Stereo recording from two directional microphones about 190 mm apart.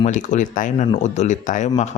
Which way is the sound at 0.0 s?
40° left (ahead or behind).